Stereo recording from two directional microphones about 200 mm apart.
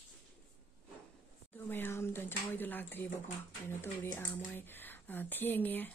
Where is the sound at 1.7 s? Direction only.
10° left (ahead or behind).